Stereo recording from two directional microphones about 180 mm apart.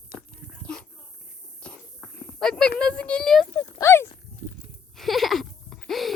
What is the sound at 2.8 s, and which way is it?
Speech, 5° left (ahead or behind).